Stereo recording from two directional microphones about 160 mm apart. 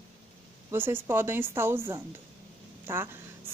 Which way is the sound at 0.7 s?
15° right (ahead or behind).